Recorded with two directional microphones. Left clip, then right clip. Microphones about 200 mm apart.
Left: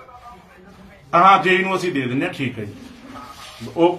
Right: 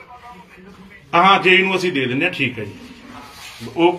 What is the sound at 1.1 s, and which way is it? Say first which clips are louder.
Speech: right 1 dB; 25° left (ahead or behind).